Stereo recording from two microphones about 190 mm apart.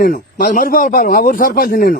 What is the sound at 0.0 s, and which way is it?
A man's voice, 45° left (ahead or behind).